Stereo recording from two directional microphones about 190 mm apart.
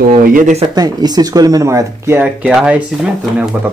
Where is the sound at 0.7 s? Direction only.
20° right (ahead or behind).